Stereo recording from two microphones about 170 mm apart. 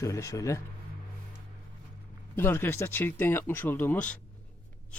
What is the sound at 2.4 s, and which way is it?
Speech, 15° left (ahead or behind).